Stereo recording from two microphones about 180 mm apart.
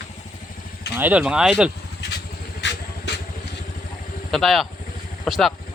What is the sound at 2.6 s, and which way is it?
Vehicle, 75° left (ahead or behind).